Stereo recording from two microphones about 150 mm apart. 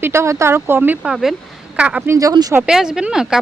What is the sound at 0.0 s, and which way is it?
Speech, 15° right (ahead or behind).